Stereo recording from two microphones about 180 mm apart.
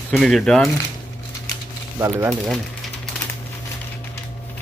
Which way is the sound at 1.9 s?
15° right (ahead or behind).